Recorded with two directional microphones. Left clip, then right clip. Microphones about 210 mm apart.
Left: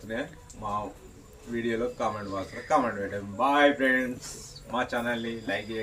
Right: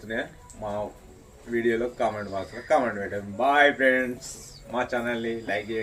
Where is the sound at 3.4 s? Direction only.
Centre (ahead or behind).